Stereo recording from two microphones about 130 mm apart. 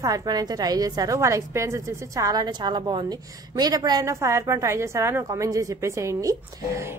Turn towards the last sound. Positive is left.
turn(degrees=-25)  # may be behind; listen again after turning